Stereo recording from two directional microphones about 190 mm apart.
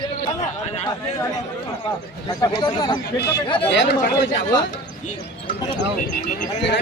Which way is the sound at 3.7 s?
70° left (ahead or behind).